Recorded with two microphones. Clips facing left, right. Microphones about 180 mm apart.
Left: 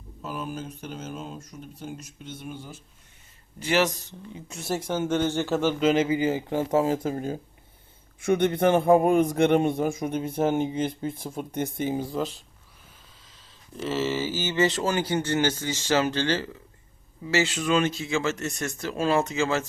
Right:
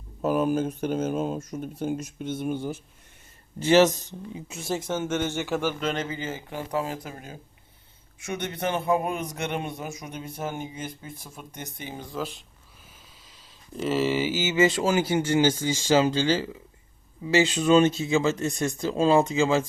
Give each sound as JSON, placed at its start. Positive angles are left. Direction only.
{"t": 0.2, "sound": "speech", "side_deg": -50}
{"t": 3.6, "sound": "speech", "side_deg": -20}
{"t": 4.9, "sound": "speech", "side_deg": 15}
{"t": 5.2, "sound": "speech", "side_deg": -15}
{"t": 5.8, "sound": "speech", "side_deg": 5}
{"t": 7.0, "sound": "speech", "side_deg": 35}
{"t": 8.2, "sound": "a man's voice", "side_deg": 55}
{"t": 13.8, "sound": "speech", "side_deg": -15}